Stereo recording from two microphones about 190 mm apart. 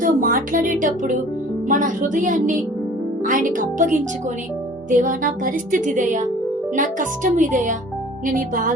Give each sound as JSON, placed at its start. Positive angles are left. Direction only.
{"t": 0.0, "sound": "speech", "side_deg": -45}